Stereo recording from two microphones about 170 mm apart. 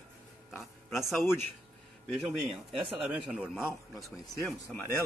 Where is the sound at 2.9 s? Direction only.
10° right (ahead or behind).